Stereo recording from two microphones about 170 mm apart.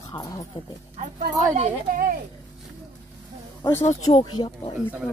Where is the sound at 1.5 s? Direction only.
45° right (ahead or behind).